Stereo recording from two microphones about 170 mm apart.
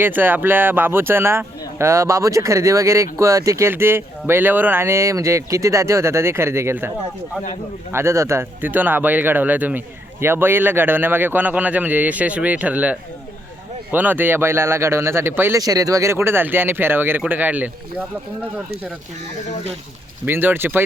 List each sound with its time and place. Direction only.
0.0 s speech: 10° right (ahead or behind)
7.9 s speech: 15° right (ahead or behind)
20.2 s speech: 10° right (ahead or behind)